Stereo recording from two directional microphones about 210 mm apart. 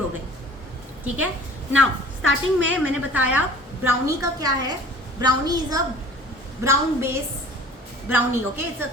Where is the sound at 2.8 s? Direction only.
10° right (ahead or behind).